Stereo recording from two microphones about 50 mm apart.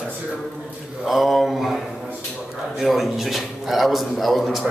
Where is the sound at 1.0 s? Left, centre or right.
Centre.